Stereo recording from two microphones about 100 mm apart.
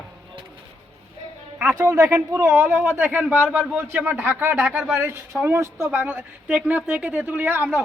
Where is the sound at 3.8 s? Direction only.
20° right (ahead or behind).